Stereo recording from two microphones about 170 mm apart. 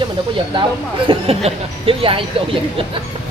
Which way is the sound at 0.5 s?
30° right (ahead or behind).